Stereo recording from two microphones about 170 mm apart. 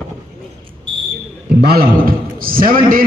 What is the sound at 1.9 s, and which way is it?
A man's voice, 55° right (ahead or behind).